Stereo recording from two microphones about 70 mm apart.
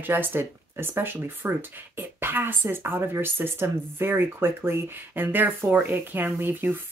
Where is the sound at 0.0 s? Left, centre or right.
Right.